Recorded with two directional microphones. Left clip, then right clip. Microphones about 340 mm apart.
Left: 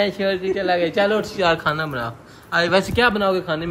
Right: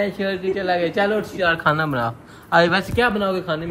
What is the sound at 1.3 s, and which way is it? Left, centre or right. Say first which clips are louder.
Speech: left 1 dB; centre.